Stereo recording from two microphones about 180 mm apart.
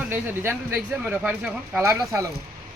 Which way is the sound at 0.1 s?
10° right (ahead or behind).